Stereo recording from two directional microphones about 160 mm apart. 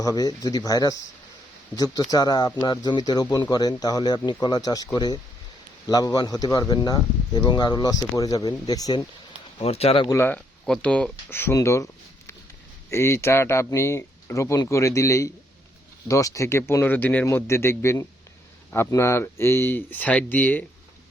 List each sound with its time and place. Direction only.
0.0 s speech: 20° left (ahead or behind)
2.0 s speech: 25° left (ahead or behind)
9.6 s speech: 40° left (ahead or behind)
10.1 s speech: 15° left (ahead or behind)
12.9 s speech: 15° left (ahead or behind)